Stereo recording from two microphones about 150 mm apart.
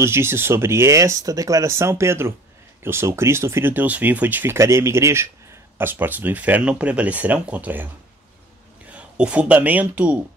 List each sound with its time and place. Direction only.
0.0 s speech: 15° right (ahead or behind)
8.9 s speech: 10° right (ahead or behind)